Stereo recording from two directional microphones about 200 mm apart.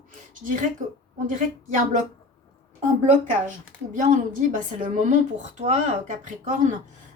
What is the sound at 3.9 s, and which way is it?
Speech, 40° right (ahead or behind).